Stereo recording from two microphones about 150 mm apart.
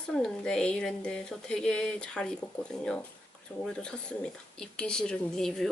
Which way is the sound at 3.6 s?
5° left (ahead or behind).